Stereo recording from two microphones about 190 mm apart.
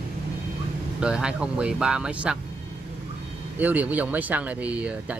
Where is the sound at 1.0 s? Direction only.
5° right (ahead or behind).